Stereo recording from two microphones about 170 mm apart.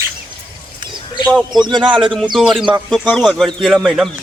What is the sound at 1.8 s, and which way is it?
Speech, 5° right (ahead or behind).